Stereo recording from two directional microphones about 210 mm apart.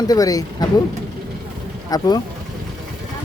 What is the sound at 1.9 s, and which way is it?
Speech, 20° left (ahead or behind).